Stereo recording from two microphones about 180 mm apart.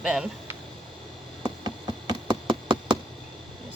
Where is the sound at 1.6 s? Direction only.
25° right (ahead or behind).